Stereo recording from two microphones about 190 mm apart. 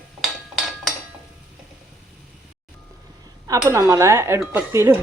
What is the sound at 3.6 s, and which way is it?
Speech, 15° right (ahead or behind).